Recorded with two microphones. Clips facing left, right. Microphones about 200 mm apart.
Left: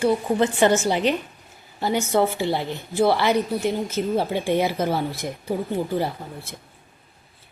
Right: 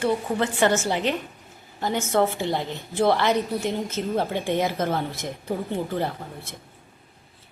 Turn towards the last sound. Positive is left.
turn(degrees=5)  # may be behind; listen again after turning